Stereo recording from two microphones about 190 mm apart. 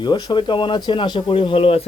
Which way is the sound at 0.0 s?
25° left (ahead or behind).